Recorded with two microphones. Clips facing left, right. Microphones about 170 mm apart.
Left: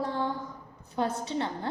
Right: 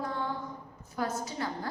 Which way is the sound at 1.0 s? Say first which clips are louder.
Left 4 dB; 25° left (ahead or behind).